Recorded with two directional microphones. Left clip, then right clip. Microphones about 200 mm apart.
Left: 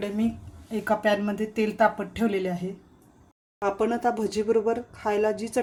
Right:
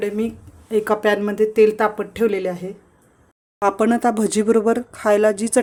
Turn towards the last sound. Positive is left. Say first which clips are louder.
# right 9 dB
turn(degrees=-45)  # may be behind; listen again after turning